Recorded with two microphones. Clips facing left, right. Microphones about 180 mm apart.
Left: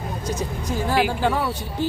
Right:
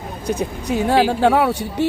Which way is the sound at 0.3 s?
65° right (ahead or behind).